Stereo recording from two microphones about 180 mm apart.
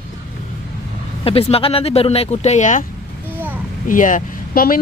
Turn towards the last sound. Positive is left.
turn(degrees=55)  # may be behind; listen again after turning